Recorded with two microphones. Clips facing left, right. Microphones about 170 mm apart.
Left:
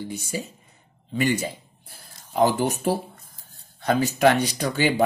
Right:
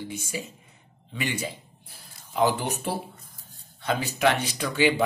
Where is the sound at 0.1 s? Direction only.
40° left (ahead or behind).